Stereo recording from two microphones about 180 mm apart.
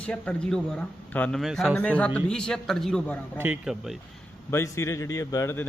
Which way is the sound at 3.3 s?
10° right (ahead or behind).